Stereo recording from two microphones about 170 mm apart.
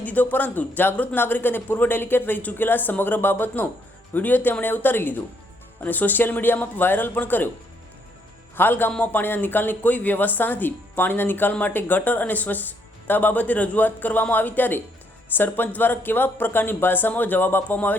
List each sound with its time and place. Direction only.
0.0 s a man's voice: 10° left (ahead or behind)
8.5 s a man's voice: 10° left (ahead or behind)